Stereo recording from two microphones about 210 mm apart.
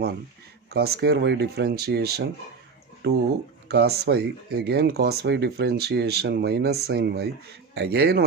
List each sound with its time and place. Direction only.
0.7 s speech: 50° right (ahead or behind)